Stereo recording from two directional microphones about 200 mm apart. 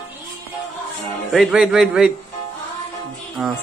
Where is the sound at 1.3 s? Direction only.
Centre (ahead or behind).